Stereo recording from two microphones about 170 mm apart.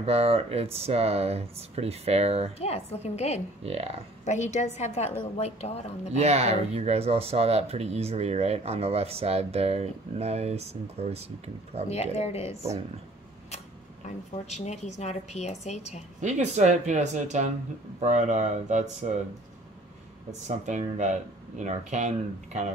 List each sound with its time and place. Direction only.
0.0 s speech: 35° right (ahead or behind)
2.6 s a woman's voice: 40° left (ahead or behind)
3.6 s speech: 35° right (ahead or behind)
4.2 s a woman's voice: 45° left (ahead or behind)
6.1 s speech: 40° right (ahead or behind)
11.9 s a woman's voice: 40° left (ahead or behind)
14.0 s a woman's voice: 40° left (ahead or behind)
16.2 s speech: 45° right (ahead or behind)
20.2 s speech: 45° right (ahead or behind)